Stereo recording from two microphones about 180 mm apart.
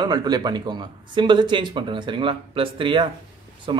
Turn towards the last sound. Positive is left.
turn(degrees=-30)  # may be behind; listen again after turning